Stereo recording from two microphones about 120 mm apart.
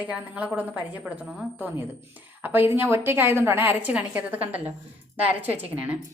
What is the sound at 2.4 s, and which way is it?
A woman's voice, 15° right (ahead or behind).